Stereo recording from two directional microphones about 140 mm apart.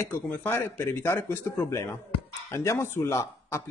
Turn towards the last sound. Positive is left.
turn(degrees=20)  # may be behind; listen again after turning